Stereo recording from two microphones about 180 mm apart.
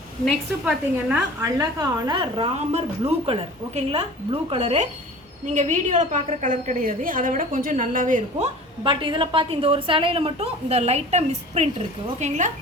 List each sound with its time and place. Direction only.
0.6 s a woman's voice: 5° right (ahead or behind)
2.0 s a woman's voice: 25° right (ahead or behind); by 8.4 s 45° right (ahead or behind)
8.8 s a woman's voice: 25° right (ahead or behind)